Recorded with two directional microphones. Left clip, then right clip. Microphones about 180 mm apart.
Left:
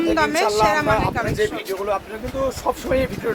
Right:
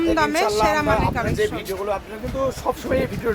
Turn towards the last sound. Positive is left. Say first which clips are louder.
# left 1 dB
turn(degrees=-25)  # may be behind; listen again after turning